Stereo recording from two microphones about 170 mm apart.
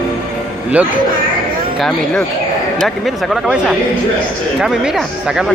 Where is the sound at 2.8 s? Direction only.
Centre (ahead or behind).